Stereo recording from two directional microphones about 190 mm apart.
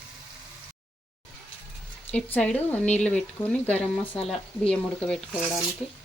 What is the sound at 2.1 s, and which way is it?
Speech, 10° left (ahead or behind).